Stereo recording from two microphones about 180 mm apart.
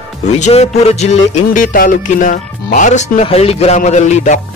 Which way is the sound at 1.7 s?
50° left (ahead or behind).